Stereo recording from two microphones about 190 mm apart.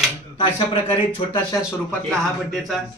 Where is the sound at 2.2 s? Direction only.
Centre (ahead or behind).